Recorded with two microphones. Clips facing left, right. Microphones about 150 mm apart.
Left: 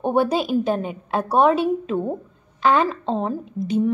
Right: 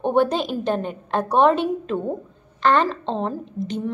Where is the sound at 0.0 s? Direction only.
5° left (ahead or behind).